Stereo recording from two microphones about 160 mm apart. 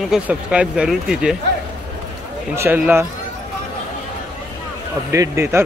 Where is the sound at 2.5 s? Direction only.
15° right (ahead or behind).